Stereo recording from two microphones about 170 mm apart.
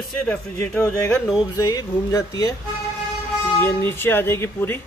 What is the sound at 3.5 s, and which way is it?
A man's voice, 15° left (ahead or behind).